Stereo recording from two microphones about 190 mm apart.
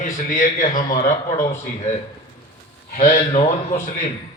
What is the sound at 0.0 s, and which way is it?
A man's voice, 45° left (ahead or behind).